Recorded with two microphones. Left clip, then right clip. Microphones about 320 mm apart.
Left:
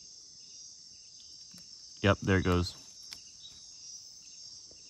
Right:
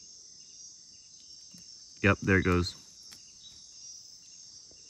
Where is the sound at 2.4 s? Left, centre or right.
Centre.